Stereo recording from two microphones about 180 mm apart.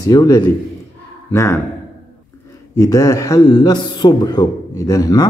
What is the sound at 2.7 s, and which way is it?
A man's voice, 20° left (ahead or behind).